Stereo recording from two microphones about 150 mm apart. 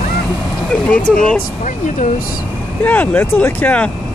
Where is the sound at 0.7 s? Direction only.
10° left (ahead or behind).